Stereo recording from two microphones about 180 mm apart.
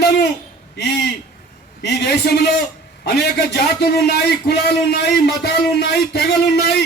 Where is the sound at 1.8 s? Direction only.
65° left (ahead or behind).